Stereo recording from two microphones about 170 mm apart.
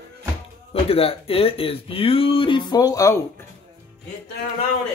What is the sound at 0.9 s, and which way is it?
Speech, 35° left (ahead or behind).